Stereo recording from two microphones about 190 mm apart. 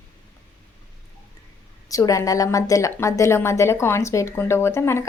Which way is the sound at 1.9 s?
20° left (ahead or behind).